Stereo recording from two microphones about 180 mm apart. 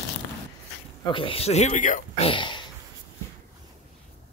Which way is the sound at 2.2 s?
25° left (ahead or behind).